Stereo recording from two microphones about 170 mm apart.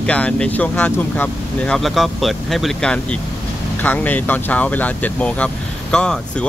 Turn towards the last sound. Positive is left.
turn(degrees=5)  # may be behind; listen again after turning